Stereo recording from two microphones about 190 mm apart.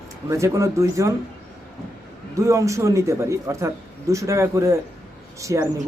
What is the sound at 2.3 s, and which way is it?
Speech, 15° right (ahead or behind).